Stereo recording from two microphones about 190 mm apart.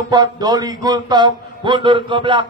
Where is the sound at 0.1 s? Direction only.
20° right (ahead or behind).